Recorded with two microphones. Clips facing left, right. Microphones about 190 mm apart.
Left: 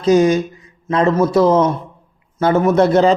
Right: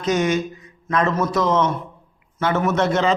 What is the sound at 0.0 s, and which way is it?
A man's voice, 35° left (ahead or behind).